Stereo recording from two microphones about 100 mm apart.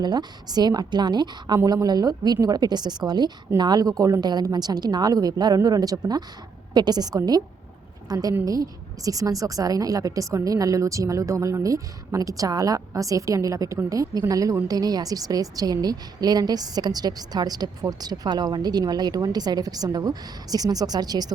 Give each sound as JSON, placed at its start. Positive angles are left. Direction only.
{"t": 0.0, "sound": "a woman's voice", "side_deg": -45}